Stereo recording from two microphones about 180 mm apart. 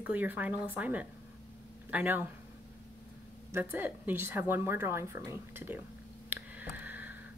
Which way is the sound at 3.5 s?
10° right (ahead or behind).